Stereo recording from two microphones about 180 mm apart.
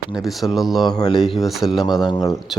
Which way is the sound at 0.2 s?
Centre (ahead or behind).